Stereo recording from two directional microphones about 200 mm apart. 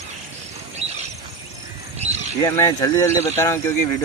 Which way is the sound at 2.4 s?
15° left (ahead or behind).